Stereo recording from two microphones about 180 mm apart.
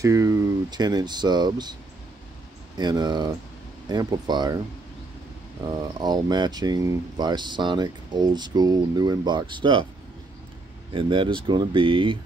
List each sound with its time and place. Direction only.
0.0 s speech: 15° right (ahead or behind)
2.8 s speech: 25° right (ahead or behind)
5.7 s speech: 25° right (ahead or behind)
10.9 s speech: 30° right (ahead or behind)